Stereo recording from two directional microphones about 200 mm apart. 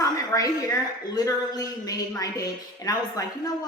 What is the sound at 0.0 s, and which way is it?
A woman's voice, 15° left (ahead or behind).